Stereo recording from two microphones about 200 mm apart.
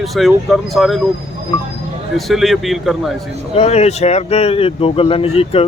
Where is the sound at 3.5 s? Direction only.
30° left (ahead or behind).